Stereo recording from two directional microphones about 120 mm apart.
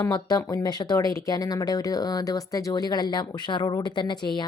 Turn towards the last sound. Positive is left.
turn(degrees=40)  # may be behind; listen again after turning